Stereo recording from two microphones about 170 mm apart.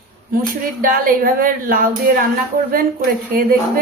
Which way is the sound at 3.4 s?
55° right (ahead or behind).